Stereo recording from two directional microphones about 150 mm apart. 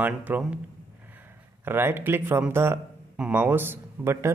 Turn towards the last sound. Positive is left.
turn(degrees=-15)  # may be behind; listen again after turning